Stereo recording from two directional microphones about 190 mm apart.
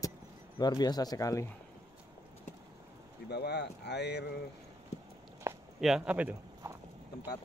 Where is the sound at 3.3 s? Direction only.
60° left (ahead or behind).